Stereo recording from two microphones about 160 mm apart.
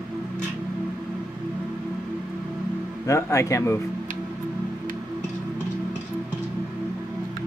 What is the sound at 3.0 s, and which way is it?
Speech, 20° left (ahead or behind).